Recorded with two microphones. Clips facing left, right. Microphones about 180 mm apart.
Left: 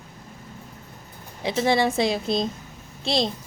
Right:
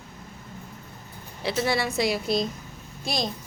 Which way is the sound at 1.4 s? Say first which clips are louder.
Left 4 dB; 20° left (ahead or behind).